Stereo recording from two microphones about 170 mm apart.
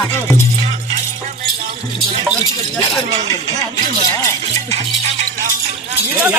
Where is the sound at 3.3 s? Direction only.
20° left (ahead or behind).